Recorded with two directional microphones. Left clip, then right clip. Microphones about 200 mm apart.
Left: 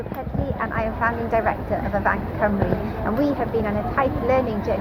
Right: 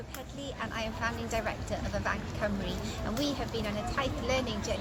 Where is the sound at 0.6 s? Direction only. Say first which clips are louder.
Left 11 dB; 35° right (ahead or behind).